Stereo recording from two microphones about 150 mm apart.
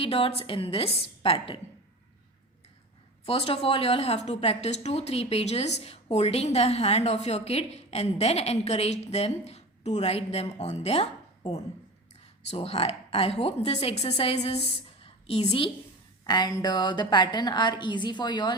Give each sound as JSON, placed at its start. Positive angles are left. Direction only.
{"t": 0.0, "sound": "a woman's voice", "side_deg": 40}
{"t": 3.2, "sound": "a woman's voice", "side_deg": 40}
{"t": 15.0, "sound": "a sound", "side_deg": 40}
{"t": 16.2, "sound": "a woman's voice", "side_deg": 30}